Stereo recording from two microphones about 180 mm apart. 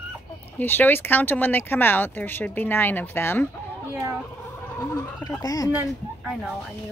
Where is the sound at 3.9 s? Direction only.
15° right (ahead or behind).